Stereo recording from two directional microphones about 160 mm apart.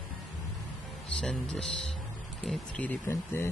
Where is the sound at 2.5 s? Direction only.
10° left (ahead or behind).